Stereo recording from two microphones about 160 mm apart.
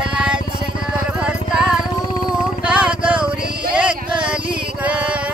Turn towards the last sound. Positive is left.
turn(degrees=-5)  # may be behind; listen again after turning